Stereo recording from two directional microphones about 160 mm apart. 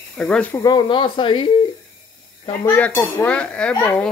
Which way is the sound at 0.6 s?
25° left (ahead or behind).